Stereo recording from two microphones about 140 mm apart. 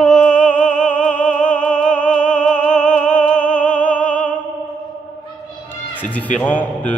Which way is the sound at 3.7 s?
10° left (ahead or behind).